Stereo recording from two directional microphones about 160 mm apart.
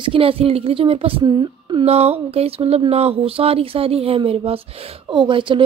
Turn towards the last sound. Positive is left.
turn(degrees=-30)  # may be behind; listen again after turning